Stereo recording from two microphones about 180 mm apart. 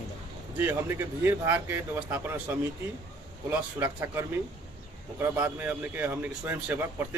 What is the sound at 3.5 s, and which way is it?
Speech, 10° right (ahead or behind).